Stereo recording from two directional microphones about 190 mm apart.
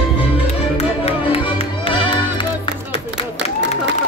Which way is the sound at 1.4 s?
25° left (ahead or behind).